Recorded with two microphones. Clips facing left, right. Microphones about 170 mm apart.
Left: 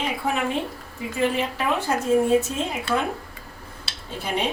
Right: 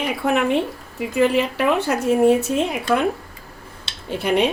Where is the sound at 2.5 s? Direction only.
60° right (ahead or behind).